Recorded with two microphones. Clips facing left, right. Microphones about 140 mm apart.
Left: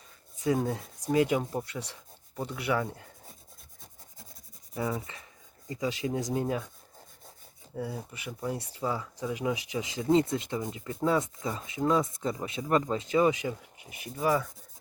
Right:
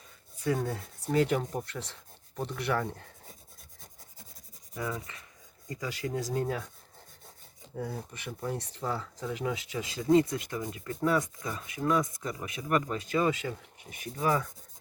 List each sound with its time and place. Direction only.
0.3 s speech: 20° left (ahead or behind)
4.7 s speech: 25° left (ahead or behind)
7.8 s speech: 10° left (ahead or behind)
14.0 s speech: 5° left (ahead or behind)